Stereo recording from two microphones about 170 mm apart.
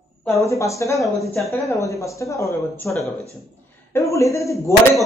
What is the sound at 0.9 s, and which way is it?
Speech, centre (ahead or behind).